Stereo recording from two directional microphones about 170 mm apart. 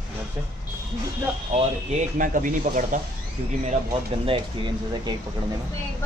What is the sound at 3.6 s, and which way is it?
Speech, 35° right (ahead or behind).